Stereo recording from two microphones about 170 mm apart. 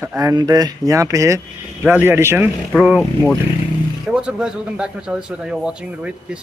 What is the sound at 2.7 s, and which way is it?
A man's voice, centre (ahead or behind).